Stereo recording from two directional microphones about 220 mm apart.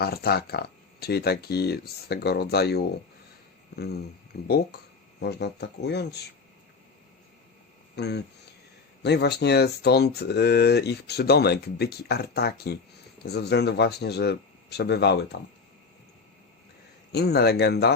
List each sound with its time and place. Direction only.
0.0 s speech: 45° left (ahead or behind)
4.4 s speech: 45° left (ahead or behind)
7.9 s speech: 50° left (ahead or behind)
17.1 s speech: 50° left (ahead or behind)